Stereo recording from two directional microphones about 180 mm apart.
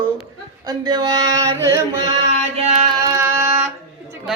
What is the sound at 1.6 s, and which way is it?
Chant, 15° right (ahead or behind).